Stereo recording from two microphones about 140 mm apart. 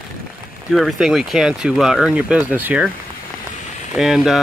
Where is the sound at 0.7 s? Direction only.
Centre (ahead or behind).